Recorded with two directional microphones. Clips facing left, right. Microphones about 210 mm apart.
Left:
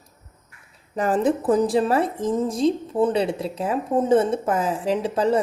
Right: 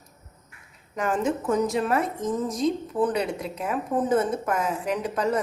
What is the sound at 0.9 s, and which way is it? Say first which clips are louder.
A woman's voice: left 5 dB; 35° left (ahead or behind).